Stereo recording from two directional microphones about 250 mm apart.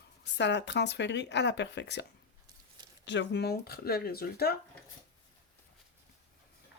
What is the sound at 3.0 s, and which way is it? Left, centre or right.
Speech, left.